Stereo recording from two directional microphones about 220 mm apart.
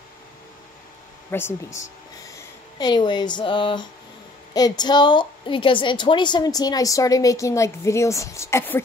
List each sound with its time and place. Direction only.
1.3 s a woman's voice: 10° left (ahead or behind)